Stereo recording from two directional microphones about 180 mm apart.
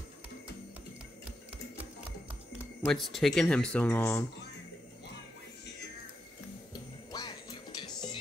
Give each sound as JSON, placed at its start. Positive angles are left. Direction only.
{"t": 2.9, "sound": "speech", "side_deg": 0}
{"t": 6.7, "sound": "music", "side_deg": 20}